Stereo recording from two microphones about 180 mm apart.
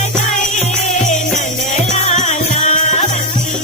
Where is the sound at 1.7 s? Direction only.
40° left (ahead or behind).